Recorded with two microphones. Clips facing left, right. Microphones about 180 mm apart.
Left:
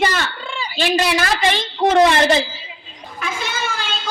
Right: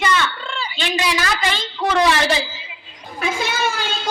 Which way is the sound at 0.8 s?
45° left (ahead or behind).